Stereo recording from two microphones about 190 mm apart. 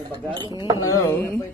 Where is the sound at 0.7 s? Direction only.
15° left (ahead or behind).